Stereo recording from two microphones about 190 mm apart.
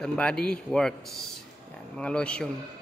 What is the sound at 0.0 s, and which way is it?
A man's voice, 5° left (ahead or behind).